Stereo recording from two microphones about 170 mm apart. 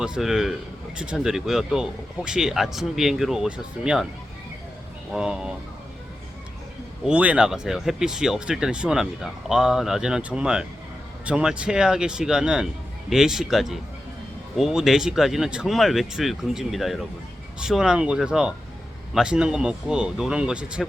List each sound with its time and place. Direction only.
0.0 s speech: 5° right (ahead or behind)
5.1 s speech: 5° right (ahead or behind)
7.0 s speech: 5° right (ahead or behind)